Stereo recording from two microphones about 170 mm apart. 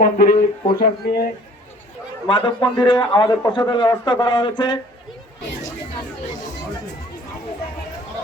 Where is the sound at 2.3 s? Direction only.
30° left (ahead or behind).